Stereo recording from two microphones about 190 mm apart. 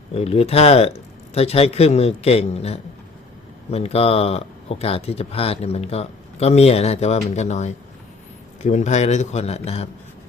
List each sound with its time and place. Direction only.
0.1 s speech: 30° left (ahead or behind)